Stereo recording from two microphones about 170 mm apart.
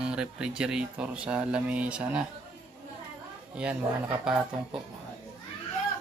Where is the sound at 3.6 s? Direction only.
5° right (ahead or behind).